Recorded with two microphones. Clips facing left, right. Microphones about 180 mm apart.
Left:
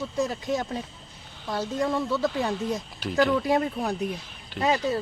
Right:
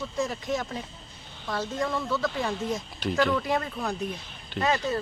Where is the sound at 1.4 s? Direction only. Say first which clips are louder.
Left 2 dB; 15° left (ahead or behind).